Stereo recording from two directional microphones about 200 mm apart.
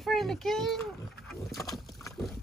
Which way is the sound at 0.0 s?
Centre (ahead or behind).